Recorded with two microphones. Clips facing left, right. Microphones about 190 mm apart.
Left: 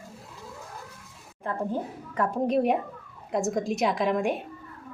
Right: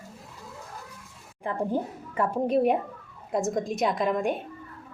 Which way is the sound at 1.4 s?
15° right (ahead or behind).